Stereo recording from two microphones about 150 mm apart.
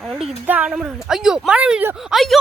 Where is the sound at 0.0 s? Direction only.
Centre (ahead or behind).